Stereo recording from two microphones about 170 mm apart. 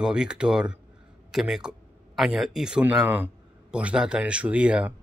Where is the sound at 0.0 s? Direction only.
5° right (ahead or behind).